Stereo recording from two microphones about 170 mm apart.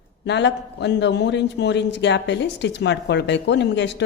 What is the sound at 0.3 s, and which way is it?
A man's voice, 90° left.